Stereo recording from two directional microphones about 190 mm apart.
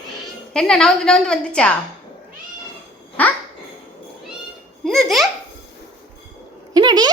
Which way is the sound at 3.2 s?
10° left (ahead or behind).